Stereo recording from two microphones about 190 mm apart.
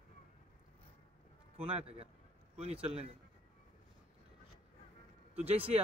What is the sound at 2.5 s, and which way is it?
Speech, 30° right (ahead or behind).